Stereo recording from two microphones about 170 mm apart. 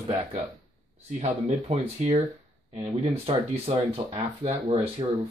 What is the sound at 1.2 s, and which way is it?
Speech, 40° right (ahead or behind).